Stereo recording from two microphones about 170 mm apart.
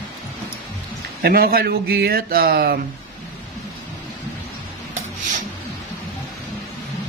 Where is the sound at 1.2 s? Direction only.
65° right (ahead or behind).